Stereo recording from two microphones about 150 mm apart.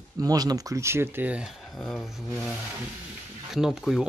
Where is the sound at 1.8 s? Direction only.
Centre (ahead or behind).